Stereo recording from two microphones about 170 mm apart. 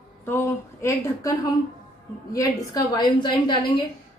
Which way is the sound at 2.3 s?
25° left (ahead or behind).